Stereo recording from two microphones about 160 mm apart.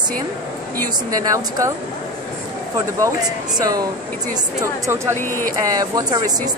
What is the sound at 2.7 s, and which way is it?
A woman's voice, 20° right (ahead or behind).